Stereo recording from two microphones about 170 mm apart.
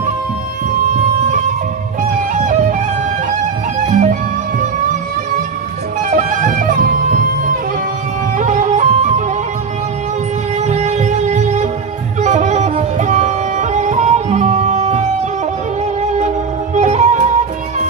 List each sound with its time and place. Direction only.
2.3 s music: 45° right (ahead or behind)
3.8 s music: 45° right (ahead or behind)
6.0 s music: 50° right (ahead or behind)
8.4 s music: 45° right (ahead or behind)
10.6 s music: 40° right (ahead or behind)